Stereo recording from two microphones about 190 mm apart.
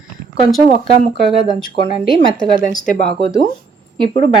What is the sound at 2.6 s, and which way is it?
Speech, 45° left (ahead or behind).